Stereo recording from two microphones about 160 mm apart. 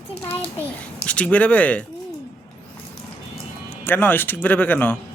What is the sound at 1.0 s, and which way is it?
Speech, 5° left (ahead or behind).